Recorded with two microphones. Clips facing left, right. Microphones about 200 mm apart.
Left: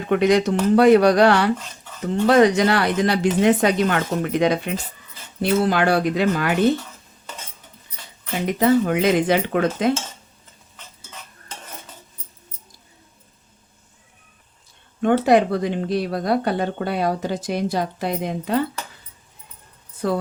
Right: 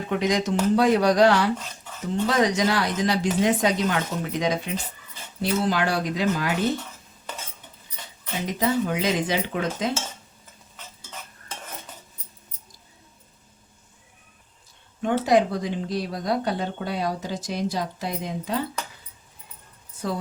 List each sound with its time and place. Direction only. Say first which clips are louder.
0.1 s speech: left 7 dB; 60° left (ahead or behind)
8.4 s speech: left 7 dB; 60° left (ahead or behind)
15.0 s speech: left 4 dB; 60° left (ahead or behind)
20.0 s speech: left 6 dB; 60° left (ahead or behind)